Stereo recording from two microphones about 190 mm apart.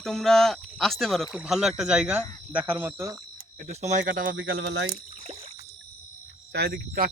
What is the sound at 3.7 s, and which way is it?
Speech, 35° right (ahead or behind).